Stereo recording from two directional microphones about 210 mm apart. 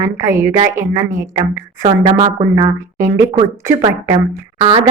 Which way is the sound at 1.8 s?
30° right (ahead or behind).